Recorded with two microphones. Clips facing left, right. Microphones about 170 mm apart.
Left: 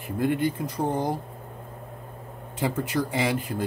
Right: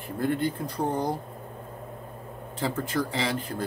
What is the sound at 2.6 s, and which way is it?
Speech, 15° left (ahead or behind).